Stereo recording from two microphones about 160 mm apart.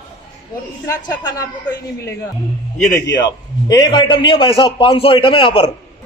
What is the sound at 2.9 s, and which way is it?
A man's voice, 25° left (ahead or behind).